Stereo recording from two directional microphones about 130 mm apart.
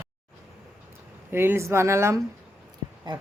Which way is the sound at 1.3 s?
15° right (ahead or behind).